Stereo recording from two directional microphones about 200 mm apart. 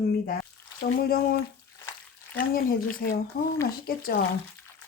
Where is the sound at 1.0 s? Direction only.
50° left (ahead or behind).